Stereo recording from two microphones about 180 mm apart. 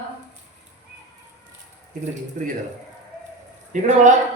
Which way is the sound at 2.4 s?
45° right (ahead or behind).